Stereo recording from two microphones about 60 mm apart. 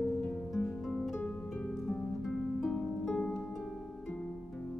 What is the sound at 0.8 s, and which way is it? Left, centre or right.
Harp, centre.